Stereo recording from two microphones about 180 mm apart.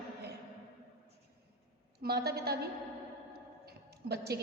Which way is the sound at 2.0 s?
60° right (ahead or behind).